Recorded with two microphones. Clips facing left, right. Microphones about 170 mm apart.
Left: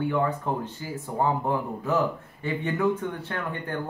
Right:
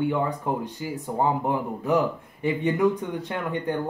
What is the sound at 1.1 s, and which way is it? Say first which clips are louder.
A man's voice: right 1 dB; 15° right (ahead or behind).